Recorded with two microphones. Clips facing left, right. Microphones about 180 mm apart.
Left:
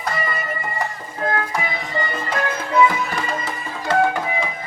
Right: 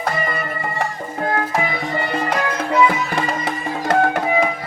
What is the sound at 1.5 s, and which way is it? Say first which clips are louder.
Music: right 3 dB; 55° right (ahead or behind).